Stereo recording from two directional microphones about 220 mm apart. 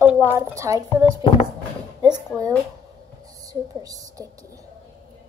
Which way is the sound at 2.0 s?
20° right (ahead or behind).